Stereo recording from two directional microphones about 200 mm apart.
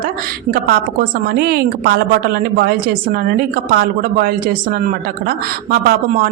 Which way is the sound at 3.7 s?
50° right (ahead or behind).